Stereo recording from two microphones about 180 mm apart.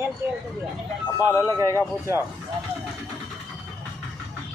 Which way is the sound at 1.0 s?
15° left (ahead or behind).